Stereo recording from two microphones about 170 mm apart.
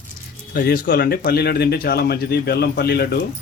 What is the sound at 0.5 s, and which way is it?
Speech, 70° left (ahead or behind).